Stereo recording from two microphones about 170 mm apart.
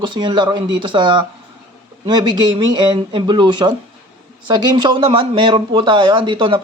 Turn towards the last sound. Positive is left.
turn(degrees=-30)  # may be behind; listen again after turning